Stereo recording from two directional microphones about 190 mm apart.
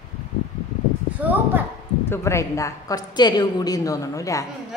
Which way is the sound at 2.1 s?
15° left (ahead or behind).